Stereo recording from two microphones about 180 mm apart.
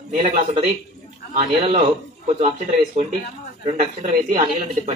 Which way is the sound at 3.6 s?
35° right (ahead or behind).